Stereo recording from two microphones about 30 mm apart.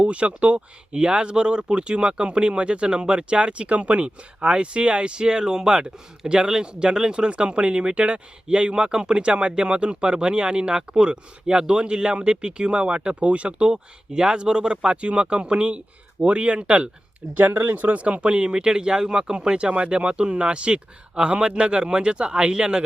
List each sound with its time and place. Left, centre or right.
0.0 s speech: right
13.7 s speech: right
17.3 s speech: right